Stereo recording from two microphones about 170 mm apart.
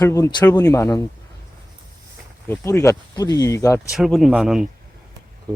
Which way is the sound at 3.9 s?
Centre (ahead or behind).